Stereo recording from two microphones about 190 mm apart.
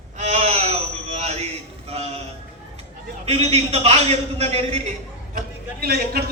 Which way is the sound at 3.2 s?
35° right (ahead or behind).